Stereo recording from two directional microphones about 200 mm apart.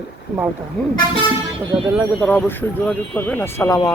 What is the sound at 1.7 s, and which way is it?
Speech, 10° right (ahead or behind).